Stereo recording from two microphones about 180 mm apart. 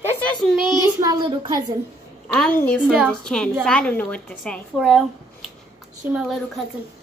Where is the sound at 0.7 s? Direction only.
25° right (ahead or behind).